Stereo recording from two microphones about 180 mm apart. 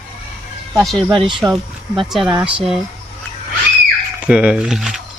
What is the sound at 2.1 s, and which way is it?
Speech, centre (ahead or behind).